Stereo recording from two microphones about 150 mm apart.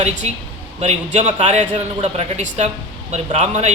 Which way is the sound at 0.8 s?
50° right (ahead or behind).